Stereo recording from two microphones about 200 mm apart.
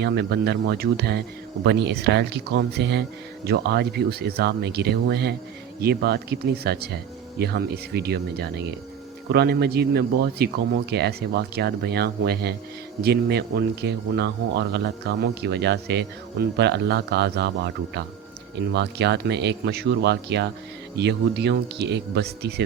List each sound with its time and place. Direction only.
0.0 s a man's voice: 55° right (ahead or behind)